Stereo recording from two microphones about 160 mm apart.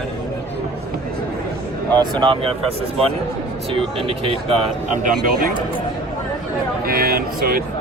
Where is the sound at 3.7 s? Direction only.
35° right (ahead or behind).